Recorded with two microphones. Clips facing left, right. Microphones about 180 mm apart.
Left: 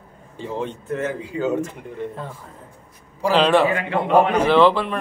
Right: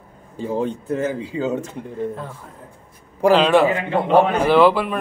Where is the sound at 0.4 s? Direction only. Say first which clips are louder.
Right 5 dB; 40° right (ahead or behind).